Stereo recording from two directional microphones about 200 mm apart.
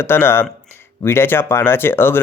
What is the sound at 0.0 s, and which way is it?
Speech, 10° left (ahead or behind).